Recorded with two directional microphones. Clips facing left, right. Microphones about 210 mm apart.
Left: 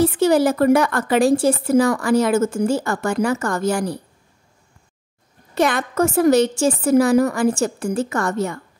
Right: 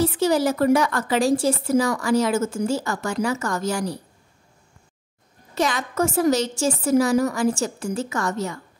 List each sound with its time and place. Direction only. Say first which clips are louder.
0.0 s a woman's voice: left 4 dB; 55° left (ahead or behind)
5.5 s a woman's voice: left 5 dB; 60° left (ahead or behind)